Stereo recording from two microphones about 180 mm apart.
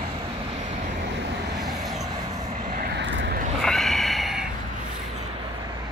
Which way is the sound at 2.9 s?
80° right.